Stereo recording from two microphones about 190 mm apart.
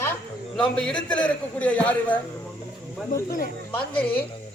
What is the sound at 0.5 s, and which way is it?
A man's voice, 5° left (ahead or behind).